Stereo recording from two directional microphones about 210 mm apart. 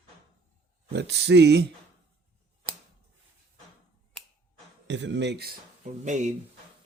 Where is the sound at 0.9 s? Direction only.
55° right (ahead or behind).